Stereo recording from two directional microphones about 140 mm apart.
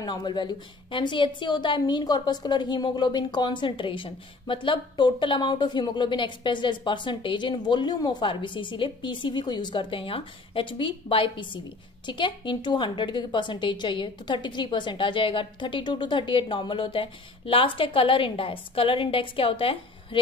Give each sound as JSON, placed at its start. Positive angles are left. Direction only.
{"t": 0.0, "sound": "a woman's voice", "side_deg": 30}